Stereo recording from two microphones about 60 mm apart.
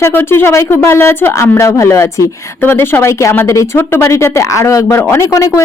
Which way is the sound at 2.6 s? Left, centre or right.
Left.